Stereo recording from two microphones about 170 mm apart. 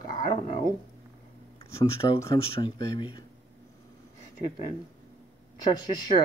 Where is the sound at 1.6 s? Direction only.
35° left (ahead or behind).